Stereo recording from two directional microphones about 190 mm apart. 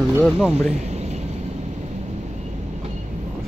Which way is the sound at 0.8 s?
35° right (ahead or behind).